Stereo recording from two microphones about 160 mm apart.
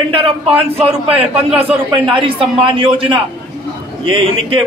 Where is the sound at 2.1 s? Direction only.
30° right (ahead or behind).